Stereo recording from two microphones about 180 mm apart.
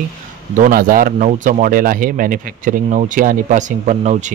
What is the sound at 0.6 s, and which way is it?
A man's voice, 50° right (ahead or behind).